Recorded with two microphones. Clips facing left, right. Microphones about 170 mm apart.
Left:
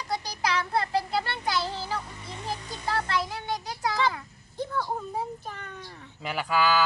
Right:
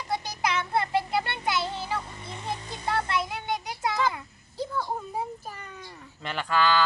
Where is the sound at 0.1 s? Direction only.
20° right (ahead or behind).